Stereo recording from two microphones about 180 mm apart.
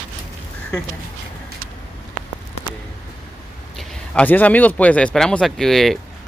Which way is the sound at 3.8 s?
10° left (ahead or behind).